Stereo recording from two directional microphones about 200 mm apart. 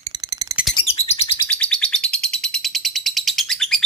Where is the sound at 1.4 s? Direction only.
5° left (ahead or behind).